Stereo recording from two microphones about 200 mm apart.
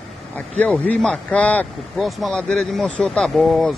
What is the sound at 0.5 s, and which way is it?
Speech, 5° left (ahead or behind).